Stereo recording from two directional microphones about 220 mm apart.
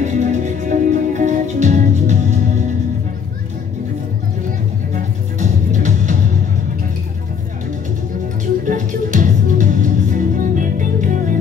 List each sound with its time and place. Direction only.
0.0 s music: 35° right (ahead or behind)
4.9 s music: 35° right (ahead or behind)
8.6 s music: 35° right (ahead or behind)